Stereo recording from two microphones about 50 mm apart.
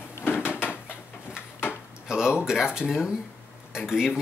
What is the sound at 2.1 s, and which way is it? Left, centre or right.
Speech, centre.